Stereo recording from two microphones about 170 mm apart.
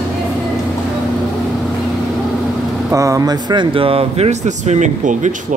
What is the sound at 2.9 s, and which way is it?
Speech, 20° right (ahead or behind).